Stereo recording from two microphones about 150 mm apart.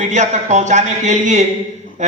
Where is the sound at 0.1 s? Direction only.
50° right (ahead or behind).